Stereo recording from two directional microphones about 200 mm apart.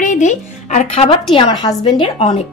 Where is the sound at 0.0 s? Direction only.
40° left (ahead or behind).